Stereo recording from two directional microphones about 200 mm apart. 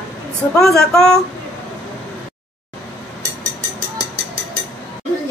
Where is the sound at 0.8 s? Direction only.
5° left (ahead or behind).